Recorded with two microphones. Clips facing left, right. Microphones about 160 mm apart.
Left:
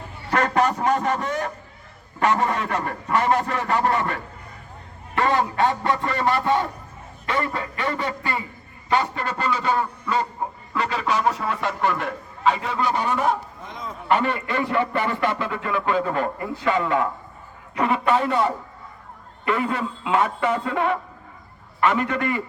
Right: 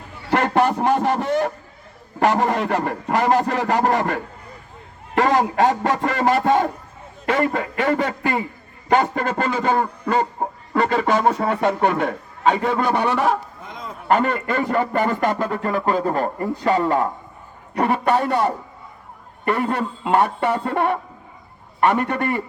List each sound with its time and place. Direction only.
0.3 s a man's voice: 30° right (ahead or behind); by 13.3 s 75° right (ahead or behind)
14.1 s a man's voice: 45° right (ahead or behind)
19.6 s a man's voice: 60° right (ahead or behind)
21.8 s a man's voice: 55° right (ahead or behind)